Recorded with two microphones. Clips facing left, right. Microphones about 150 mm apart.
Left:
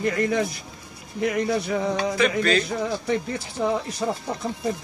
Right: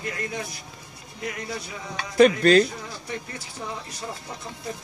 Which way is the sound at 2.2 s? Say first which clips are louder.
Right 8 dB; 40° right (ahead or behind).